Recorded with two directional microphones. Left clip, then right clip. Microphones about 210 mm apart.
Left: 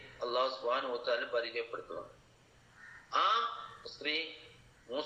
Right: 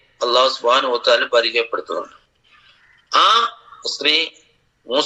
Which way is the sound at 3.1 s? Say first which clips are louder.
Right 16 dB; 50° right (ahead or behind).